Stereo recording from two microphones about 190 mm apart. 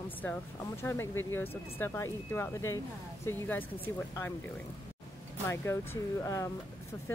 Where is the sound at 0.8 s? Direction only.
10° left (ahead or behind).